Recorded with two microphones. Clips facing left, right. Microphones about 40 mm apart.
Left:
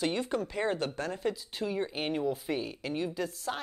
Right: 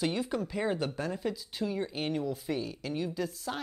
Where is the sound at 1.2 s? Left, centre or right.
Centre.